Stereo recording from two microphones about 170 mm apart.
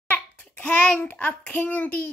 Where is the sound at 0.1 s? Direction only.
10° left (ahead or behind).